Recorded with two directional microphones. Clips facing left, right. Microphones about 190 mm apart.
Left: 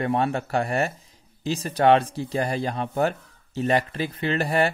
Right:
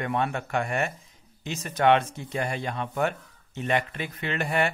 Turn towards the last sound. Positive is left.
turn(degrees=35)  # may be behind; listen again after turning